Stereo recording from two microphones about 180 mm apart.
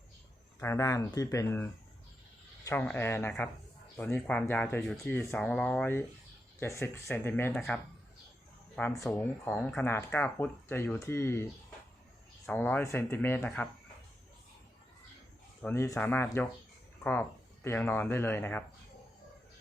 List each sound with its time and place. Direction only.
0.6 s speech: 15° left (ahead or behind)
7.5 s speech: centre (ahead or behind)
12.5 s speech: 10° left (ahead or behind)
15.6 s speech: 15° left (ahead or behind)